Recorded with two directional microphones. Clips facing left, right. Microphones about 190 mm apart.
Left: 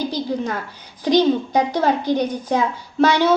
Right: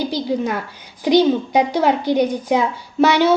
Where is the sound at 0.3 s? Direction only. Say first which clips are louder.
Right 3 dB; 10° right (ahead or behind).